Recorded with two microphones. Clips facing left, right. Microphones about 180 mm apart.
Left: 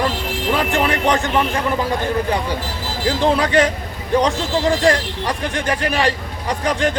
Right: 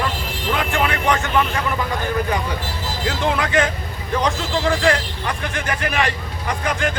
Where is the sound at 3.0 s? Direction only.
35° left (ahead or behind).